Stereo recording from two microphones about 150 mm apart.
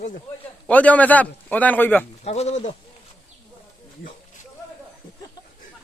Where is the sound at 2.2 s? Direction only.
45° left (ahead or behind).